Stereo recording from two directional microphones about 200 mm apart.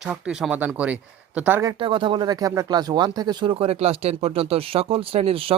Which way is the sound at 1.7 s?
25° right (ahead or behind).